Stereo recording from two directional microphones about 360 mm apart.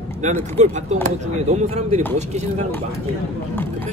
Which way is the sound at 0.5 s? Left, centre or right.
Centre.